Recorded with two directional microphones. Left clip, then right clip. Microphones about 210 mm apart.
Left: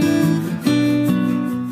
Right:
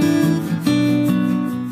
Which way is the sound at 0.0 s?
Centre (ahead or behind).